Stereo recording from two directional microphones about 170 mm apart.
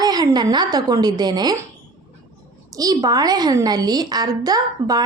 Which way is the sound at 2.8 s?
20° right (ahead or behind).